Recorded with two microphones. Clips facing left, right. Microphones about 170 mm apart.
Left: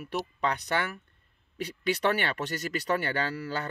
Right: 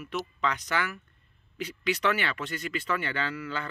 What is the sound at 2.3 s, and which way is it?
Speech, 40° left (ahead or behind).